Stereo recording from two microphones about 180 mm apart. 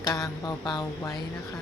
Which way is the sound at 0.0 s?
20° left (ahead or behind).